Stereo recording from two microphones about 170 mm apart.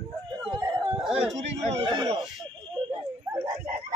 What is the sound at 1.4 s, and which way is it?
Chatter, 40° right (ahead or behind).